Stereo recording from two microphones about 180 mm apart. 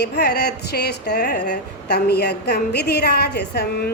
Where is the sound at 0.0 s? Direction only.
65° left (ahead or behind).